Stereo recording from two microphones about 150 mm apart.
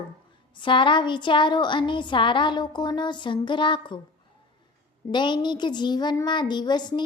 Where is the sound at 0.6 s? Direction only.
35° left (ahead or behind).